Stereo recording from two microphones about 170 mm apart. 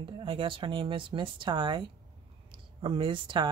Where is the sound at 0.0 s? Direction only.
30° right (ahead or behind).